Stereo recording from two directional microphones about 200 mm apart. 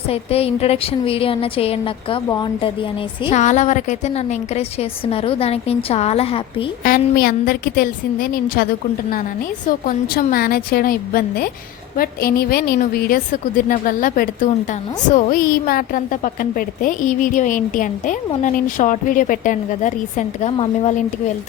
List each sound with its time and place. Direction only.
0.1 s a woman's voice: 30° left (ahead or behind)
3.2 s a woman's voice: 35° left (ahead or behind)
6.8 s a woman's voice: 45° left (ahead or behind)
9.8 s a woman's voice: 45° left (ahead or behind)